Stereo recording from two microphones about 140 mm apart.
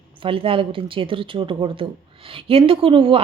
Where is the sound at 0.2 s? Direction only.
40° right (ahead or behind).